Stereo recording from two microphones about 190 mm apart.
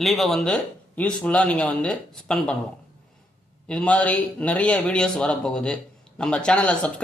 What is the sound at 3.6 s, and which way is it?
A man's voice, 5° left (ahead or behind).